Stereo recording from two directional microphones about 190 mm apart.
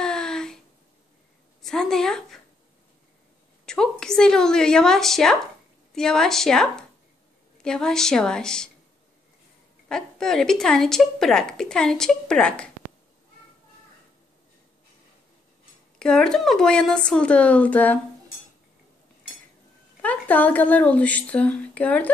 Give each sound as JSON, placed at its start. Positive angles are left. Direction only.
{"t": 0.0, "sound": "a sound", "side_deg": 5}
{"t": 1.6, "sound": "a sound", "side_deg": 0}
{"t": 3.6, "sound": "speech", "side_deg": 5}
{"t": 9.8, "sound": "speech", "side_deg": 5}
{"t": 16.0, "sound": "speech", "side_deg": 5}
{"t": 20.0, "sound": "speech", "side_deg": 10}